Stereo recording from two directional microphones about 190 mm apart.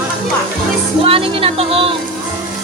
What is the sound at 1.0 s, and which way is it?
Speech, 30° right (ahead or behind).